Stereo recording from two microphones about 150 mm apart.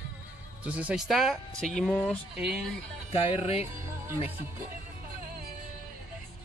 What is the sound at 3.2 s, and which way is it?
Music, 45° left (ahead or behind).